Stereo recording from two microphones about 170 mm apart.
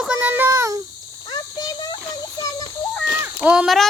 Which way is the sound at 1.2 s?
25° left (ahead or behind).